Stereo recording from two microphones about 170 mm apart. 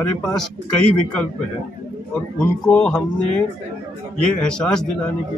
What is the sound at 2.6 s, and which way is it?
Speech, 5° left (ahead or behind).